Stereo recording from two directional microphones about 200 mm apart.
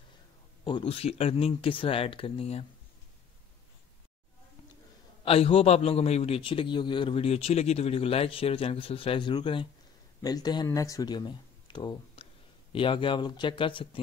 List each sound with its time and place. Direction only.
0.7 s a man's voice: 25° left (ahead or behind)
5.2 s a man's voice: 25° left (ahead or behind)